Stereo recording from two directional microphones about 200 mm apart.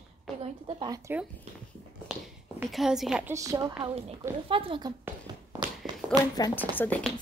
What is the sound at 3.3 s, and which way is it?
Speech, 15° right (ahead or behind).